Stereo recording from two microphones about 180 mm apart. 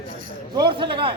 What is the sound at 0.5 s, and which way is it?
Speech, 25° right (ahead or behind).